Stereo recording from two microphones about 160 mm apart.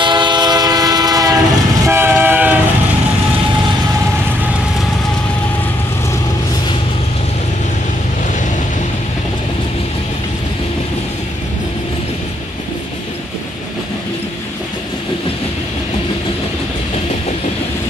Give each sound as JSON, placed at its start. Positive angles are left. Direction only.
{"t": 0.0, "sound": "train", "side_deg": -30}